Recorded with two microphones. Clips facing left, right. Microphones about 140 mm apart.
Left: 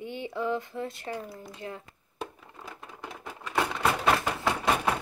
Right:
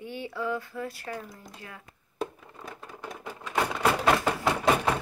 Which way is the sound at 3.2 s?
Centre (ahead or behind).